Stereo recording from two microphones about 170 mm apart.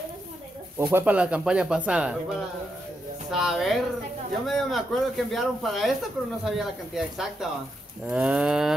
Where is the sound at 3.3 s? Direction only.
Centre (ahead or behind).